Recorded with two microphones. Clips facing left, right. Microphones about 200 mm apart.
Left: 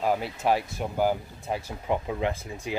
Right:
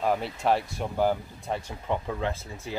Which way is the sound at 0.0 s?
5° left (ahead or behind).